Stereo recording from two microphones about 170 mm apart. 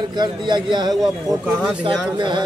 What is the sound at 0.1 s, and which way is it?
Speech, 25° right (ahead or behind).